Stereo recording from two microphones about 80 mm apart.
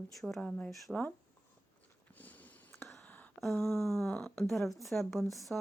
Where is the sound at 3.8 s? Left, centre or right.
Centre.